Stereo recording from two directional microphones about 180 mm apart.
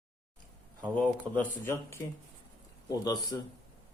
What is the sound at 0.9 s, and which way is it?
Speech, 10° left (ahead or behind).